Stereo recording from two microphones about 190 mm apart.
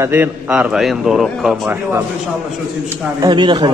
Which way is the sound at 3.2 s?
25° right (ahead or behind).